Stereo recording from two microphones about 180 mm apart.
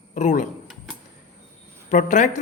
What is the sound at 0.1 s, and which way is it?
Speech, 45° left (ahead or behind).